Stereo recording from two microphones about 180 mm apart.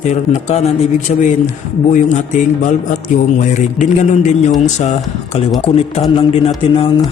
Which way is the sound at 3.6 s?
40° left (ahead or behind).